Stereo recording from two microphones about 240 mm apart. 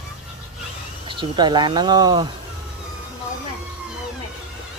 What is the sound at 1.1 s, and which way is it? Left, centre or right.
Speech, centre.